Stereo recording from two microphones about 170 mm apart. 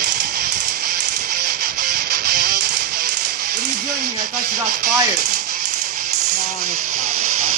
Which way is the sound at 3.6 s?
45° right (ahead or behind).